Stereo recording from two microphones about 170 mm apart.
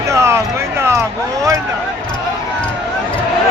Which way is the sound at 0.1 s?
15° right (ahead or behind).